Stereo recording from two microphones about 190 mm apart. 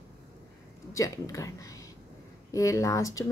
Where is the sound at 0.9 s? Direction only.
15° left (ahead or behind).